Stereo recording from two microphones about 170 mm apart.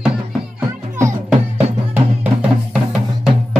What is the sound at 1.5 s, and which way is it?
Music, 10° right (ahead or behind).